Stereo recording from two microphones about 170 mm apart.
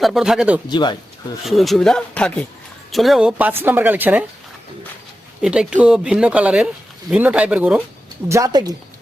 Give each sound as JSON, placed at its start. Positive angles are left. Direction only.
{"t": 0.0, "sound": "speech", "side_deg": 0}
{"t": 0.7, "sound": "speech", "side_deg": 25}
{"t": 1.5, "sound": "speech", "side_deg": 0}
{"t": 5.4, "sound": "speech", "side_deg": -5}
{"t": 8.3, "sound": "a woman's voice", "side_deg": -20}